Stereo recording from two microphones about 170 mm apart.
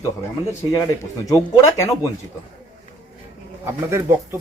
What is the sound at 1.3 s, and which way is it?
Speech, 20° left (ahead or behind).